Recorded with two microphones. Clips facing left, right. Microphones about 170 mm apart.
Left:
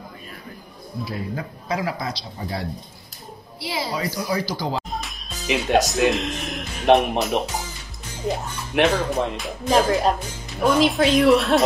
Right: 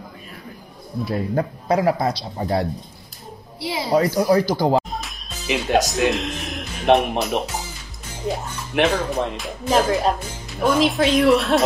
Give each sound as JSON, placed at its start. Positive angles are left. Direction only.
{"t": 1.0, "sound": "a man's voice", "side_deg": -50}
{"t": 3.9, "sound": "a man's voice", "side_deg": -55}
{"t": 4.9, "sound": "speech", "side_deg": 0}
{"t": 8.7, "sound": "speech", "side_deg": 5}